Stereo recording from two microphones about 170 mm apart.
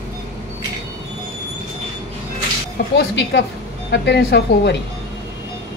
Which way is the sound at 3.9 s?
80° left.